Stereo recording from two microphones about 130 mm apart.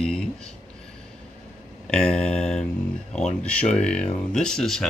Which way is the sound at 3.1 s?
10° left (ahead or behind).